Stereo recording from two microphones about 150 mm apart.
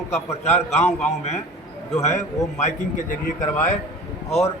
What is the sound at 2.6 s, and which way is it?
Speech, 60° left (ahead or behind).